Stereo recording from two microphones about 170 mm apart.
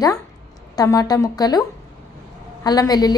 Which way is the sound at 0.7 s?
20° left (ahead or behind).